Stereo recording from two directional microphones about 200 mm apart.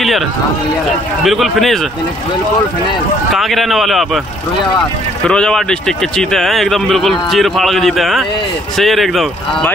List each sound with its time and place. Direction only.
1.2 s speech: centre (ahead or behind)
3.3 s speech: centre (ahead or behind)
5.2 s speech: 5° left (ahead or behind)